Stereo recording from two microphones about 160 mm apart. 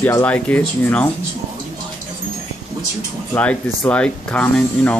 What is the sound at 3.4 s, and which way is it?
Speech, 10° left (ahead or behind).